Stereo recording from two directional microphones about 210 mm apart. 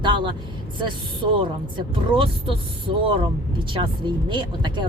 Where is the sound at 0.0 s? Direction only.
20° right (ahead or behind).